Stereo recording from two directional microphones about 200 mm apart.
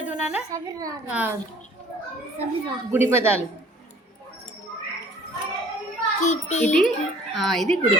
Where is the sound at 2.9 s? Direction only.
10° right (ahead or behind).